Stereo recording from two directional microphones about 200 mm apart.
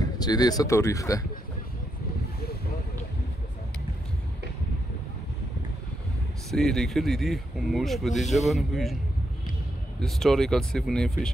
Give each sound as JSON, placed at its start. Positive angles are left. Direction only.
{"t": 0.0, "sound": "speech", "side_deg": 20}
{"t": 6.5, "sound": "speech", "side_deg": 0}
{"t": 9.9, "sound": "speech", "side_deg": 0}